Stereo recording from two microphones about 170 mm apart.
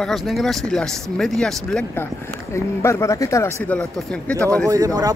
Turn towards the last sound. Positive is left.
turn(degrees=-20)  # may be behind; listen again after turning